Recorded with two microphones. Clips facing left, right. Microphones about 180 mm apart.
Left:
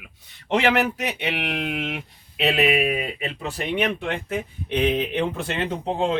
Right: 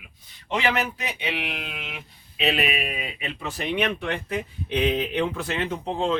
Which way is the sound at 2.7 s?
45° left (ahead or behind).